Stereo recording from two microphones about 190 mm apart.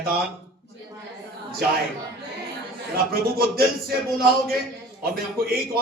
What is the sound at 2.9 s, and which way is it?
A man's voice, 50° right (ahead or behind).